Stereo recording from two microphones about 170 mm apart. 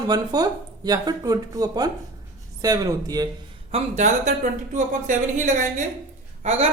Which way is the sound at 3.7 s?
45° right (ahead or behind).